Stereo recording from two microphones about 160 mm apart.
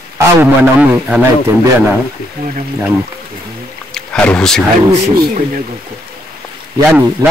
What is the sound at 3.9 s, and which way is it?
Music, 5° left (ahead or behind).